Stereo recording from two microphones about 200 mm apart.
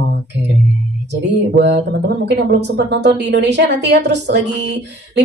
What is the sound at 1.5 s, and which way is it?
A woman's voice, 60° right (ahead or behind).